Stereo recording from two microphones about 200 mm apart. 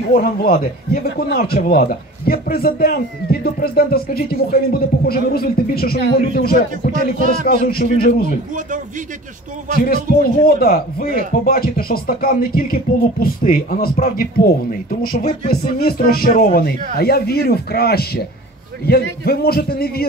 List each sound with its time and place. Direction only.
0.1 s a man's voice: 45° left (ahead or behind)
6.9 s speech: 40° right (ahead or behind)
7.4 s a man's voice: 50° left (ahead or behind)
9.8 s a man's voice: 50° left (ahead or behind)
19.2 s a man's voice: 50° left (ahead or behind)